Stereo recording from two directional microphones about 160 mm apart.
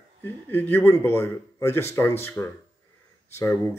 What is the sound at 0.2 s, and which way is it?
Speech, 15° left (ahead or behind).